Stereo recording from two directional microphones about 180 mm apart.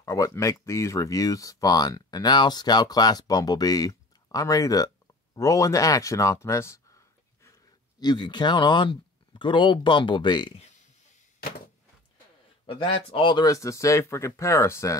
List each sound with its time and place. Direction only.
0.0 s speech: 20° left (ahead or behind)
8.0 s speech: 25° left (ahead or behind)
12.6 s speech: 30° left (ahead or behind)